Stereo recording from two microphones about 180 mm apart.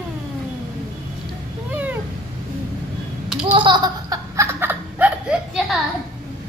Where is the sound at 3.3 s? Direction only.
5° right (ahead or behind).